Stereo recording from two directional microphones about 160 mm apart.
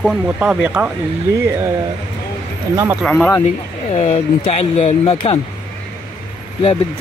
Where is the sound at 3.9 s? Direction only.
40° left (ahead or behind).